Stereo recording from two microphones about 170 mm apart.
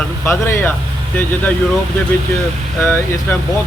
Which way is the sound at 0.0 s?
15° left (ahead or behind).